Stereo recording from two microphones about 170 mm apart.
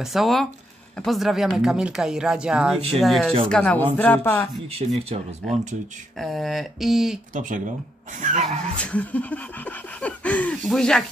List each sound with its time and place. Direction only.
0.0 s speech: centre (ahead or behind)
3.4 s a sound: 5° left (ahead or behind)
4.7 s speech: 35° right (ahead or behind)
6.1 s speech: centre (ahead or behind)
7.3 s speech: 50° right (ahead or behind)
8.7 s a sound: 10° left (ahead or behind)